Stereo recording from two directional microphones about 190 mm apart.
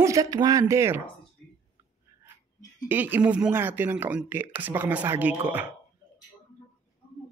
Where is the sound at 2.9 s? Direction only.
10° right (ahead or behind).